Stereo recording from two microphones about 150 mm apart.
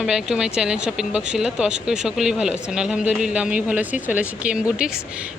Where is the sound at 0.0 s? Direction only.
5° right (ahead or behind).